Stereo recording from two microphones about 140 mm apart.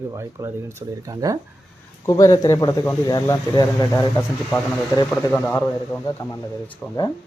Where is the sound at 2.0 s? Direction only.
25° left (ahead or behind).